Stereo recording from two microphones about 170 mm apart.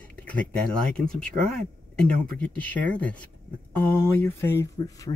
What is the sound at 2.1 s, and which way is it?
Speech, 5° left (ahead or behind).